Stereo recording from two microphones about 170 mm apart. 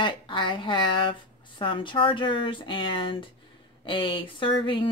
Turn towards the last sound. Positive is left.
turn(degrees=30)  # may be behind; listen again after turning